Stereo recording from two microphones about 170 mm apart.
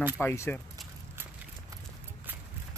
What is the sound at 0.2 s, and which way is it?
Speech, 15° left (ahead or behind).